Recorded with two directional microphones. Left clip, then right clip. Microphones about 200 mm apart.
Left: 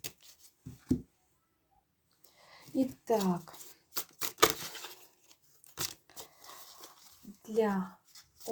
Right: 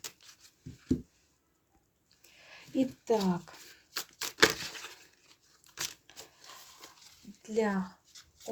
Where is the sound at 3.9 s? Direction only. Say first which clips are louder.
Right 2 dB; 10° right (ahead or behind).